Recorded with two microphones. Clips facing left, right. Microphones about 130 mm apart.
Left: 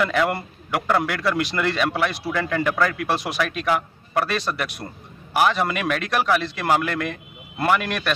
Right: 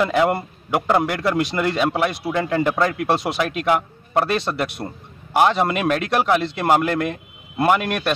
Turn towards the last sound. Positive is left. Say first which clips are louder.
# right 3 dB
turn(degrees=-20)  # may be behind; listen again after turning